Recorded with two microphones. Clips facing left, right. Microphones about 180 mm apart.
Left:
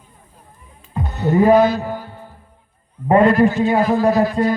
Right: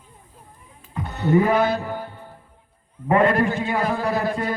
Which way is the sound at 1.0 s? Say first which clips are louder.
Left 4 dB; 60° right (ahead or behind).